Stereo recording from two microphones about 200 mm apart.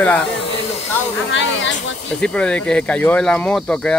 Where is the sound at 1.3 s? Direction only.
65° left (ahead or behind).